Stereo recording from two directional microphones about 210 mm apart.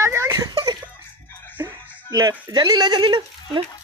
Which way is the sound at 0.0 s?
15° right (ahead or behind).